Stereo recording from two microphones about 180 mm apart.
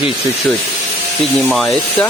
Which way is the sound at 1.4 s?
Centre (ahead or behind).